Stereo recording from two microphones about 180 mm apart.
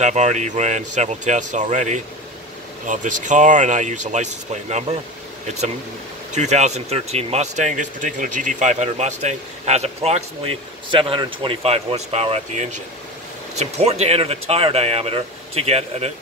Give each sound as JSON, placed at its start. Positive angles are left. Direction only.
{"t": 0.0, "sound": "speech", "side_deg": -40}
{"t": 6.3, "sound": "speech", "side_deg": -40}